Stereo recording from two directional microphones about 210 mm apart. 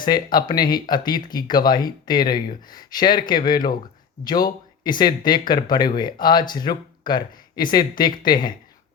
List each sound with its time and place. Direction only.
0.0 s speech: 20° left (ahead or behind)